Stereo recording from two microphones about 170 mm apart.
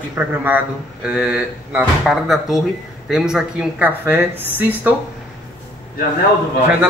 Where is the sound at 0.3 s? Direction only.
10° right (ahead or behind).